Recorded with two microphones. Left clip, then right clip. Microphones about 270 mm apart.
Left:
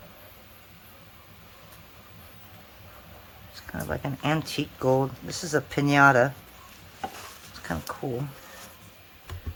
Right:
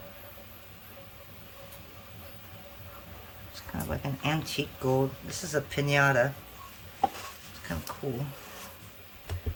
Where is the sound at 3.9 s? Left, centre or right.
Centre.